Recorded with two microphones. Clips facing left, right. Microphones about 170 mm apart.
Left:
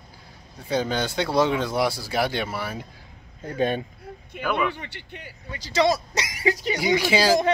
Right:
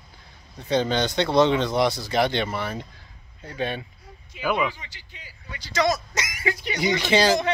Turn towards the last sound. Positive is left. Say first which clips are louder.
# even
turn(degrees=5)  # may be behind; listen again after turning